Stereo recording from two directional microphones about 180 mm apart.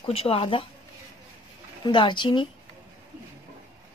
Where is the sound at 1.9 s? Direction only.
25° left (ahead or behind).